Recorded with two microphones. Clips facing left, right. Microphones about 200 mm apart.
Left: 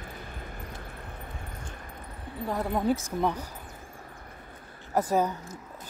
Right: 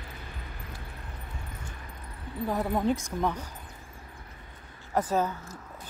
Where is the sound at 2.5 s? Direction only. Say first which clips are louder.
Even; centre (ahead or behind).